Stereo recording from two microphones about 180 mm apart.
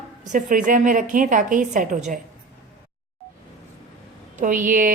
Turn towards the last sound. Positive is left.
turn(degrees=-50)  # may be behind; listen again after turning